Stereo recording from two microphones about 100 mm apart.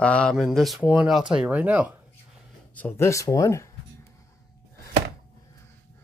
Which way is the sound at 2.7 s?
15° left (ahead or behind).